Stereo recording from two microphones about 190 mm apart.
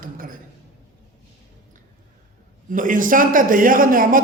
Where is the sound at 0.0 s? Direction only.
50° right (ahead or behind).